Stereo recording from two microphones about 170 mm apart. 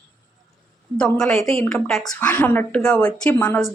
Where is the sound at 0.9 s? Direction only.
5° left (ahead or behind).